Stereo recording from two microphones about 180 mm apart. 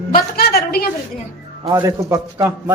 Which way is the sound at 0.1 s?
60° left (ahead or behind).